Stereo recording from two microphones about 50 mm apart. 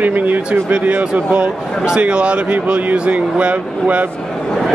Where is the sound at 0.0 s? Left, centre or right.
Right.